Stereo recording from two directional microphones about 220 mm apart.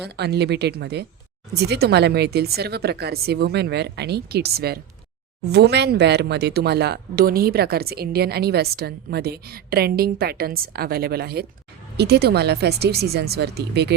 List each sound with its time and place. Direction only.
0.0 s speech: 50° right (ahead or behind)